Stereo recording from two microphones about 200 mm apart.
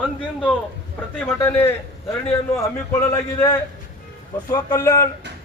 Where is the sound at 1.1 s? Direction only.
10° left (ahead or behind).